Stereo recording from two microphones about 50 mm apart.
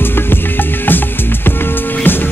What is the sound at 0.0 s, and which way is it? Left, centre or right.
Music, left.